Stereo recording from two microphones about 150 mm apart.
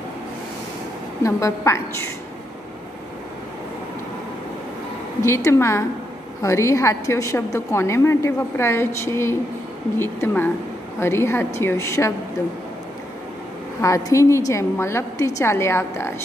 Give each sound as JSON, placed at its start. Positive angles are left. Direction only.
{"t": 1.2, "sound": "a woman's voice", "side_deg": 20}
{"t": 5.2, "sound": "a woman's voice", "side_deg": 20}
{"t": 13.7, "sound": "a woman's voice", "side_deg": 20}